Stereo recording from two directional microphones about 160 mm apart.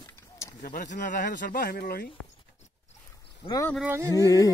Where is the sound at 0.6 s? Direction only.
55° left (ahead or behind); by 2.0 s 70° left (ahead or behind).